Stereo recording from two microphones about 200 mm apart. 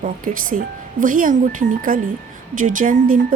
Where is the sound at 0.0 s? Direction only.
40° right (ahead or behind).